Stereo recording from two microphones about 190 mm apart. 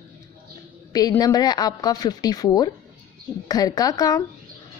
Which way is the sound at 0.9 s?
20° left (ahead or behind).